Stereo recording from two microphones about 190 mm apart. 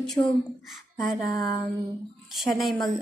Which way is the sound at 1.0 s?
Centre (ahead or behind).